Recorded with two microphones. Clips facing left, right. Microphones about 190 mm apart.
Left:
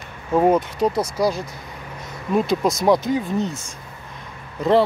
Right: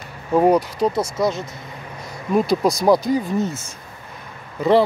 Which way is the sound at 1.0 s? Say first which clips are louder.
Even; 25° right (ahead or behind).